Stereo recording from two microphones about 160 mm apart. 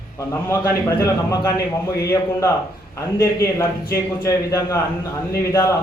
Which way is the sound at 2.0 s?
20° left (ahead or behind).